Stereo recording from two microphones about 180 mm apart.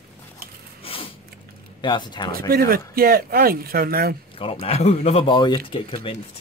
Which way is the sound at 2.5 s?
55° right (ahead or behind).